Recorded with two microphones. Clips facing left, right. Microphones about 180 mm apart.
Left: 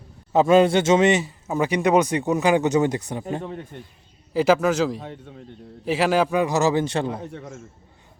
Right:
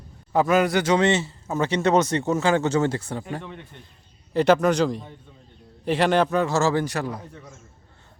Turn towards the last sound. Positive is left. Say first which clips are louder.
# left 7 dB
turn(degrees=70)  # may be behind; listen again after turning